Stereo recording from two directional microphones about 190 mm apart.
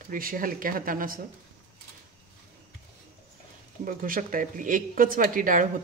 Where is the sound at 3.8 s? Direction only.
45° right (ahead or behind).